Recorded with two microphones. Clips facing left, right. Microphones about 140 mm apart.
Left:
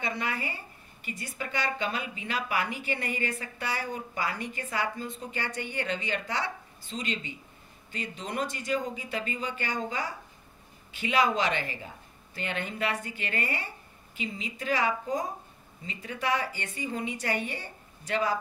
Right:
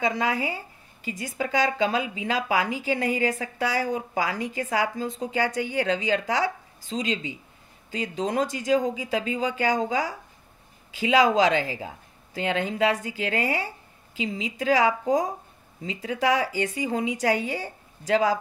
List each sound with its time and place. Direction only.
0.0 s a woman's voice: 90° right